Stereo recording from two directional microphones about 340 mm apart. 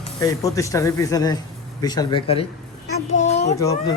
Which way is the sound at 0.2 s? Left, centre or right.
Centre.